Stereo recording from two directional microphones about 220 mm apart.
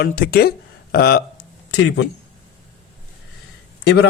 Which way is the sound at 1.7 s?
60° left (ahead or behind).